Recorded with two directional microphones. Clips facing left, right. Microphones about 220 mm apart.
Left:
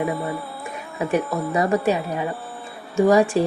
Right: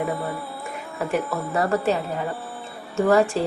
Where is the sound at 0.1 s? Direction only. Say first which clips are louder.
Left 2 dB; centre (ahead or behind).